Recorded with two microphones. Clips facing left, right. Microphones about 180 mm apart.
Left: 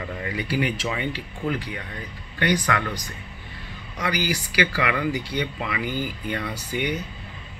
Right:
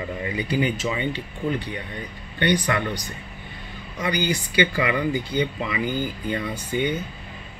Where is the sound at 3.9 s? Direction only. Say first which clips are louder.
Right 2 dB; 25° right (ahead or behind).